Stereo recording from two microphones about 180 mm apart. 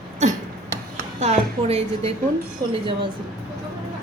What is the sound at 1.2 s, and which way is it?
Speech, 35° right (ahead or behind).